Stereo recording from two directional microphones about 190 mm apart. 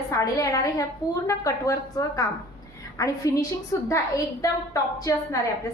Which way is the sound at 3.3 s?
15° left (ahead or behind).